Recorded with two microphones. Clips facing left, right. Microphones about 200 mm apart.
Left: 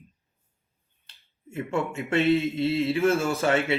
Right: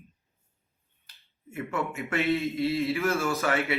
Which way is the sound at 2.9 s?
30° left (ahead or behind).